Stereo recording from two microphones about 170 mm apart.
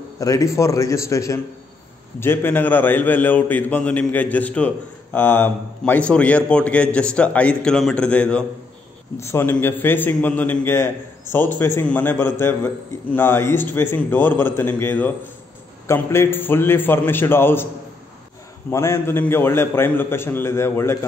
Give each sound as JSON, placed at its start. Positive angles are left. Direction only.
{"t": 0.2, "sound": "a man's voice", "side_deg": 20}
{"t": 18.7, "sound": "a man's voice", "side_deg": 15}